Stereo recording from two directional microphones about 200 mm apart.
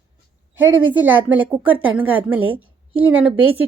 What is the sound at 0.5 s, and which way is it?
Speech, 10° right (ahead or behind).